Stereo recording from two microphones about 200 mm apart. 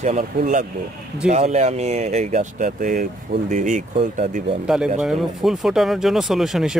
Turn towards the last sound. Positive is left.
turn(degrees=0)  # may be behind; listen again after turning